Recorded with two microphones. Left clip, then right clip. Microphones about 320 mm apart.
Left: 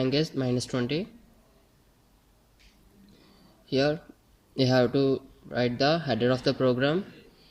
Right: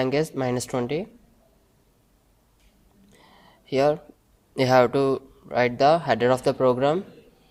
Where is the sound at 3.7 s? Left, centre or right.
Right.